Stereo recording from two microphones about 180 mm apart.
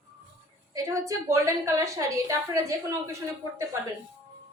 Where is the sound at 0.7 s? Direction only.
15° right (ahead or behind).